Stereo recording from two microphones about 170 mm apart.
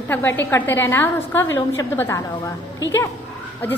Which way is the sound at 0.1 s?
10° left (ahead or behind).